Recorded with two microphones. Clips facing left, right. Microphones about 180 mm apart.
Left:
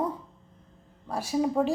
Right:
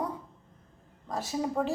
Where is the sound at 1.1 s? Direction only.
10° left (ahead or behind).